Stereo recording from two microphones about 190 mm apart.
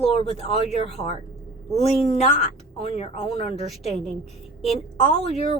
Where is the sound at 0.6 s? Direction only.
35° left (ahead or behind).